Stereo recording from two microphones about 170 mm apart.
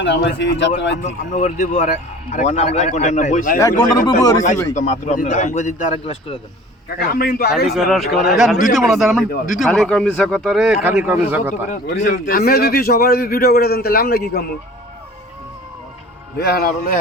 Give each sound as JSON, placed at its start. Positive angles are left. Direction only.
{"t": 0.0, "sound": "a man's voice", "side_deg": 90}
{"t": 1.0, "sound": "a man's voice", "side_deg": 50}
{"t": 3.6, "sound": "speech", "side_deg": 20}
{"t": 4.7, "sound": "a man's voice", "side_deg": 45}
{"t": 6.8, "sound": "a man's voice", "side_deg": 65}
{"t": 7.7, "sound": "speech", "side_deg": 0}
{"t": 11.7, "sound": "a man's voice", "side_deg": 55}
{"t": 16.4, "sound": "a man's voice", "side_deg": 65}